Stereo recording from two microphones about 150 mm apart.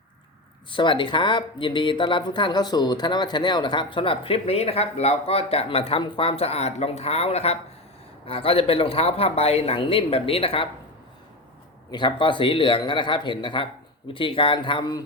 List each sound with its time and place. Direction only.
0.7 s speech: 35° left (ahead or behind)
11.9 s speech: 30° left (ahead or behind)